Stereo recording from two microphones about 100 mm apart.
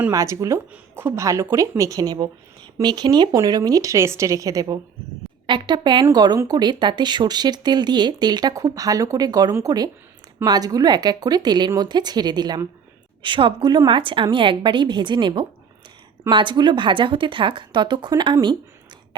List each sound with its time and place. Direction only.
0.1 s speech: 30° right (ahead or behind)
5.5 s speech: 50° right (ahead or behind)
13.2 s speech: 55° right (ahead or behind)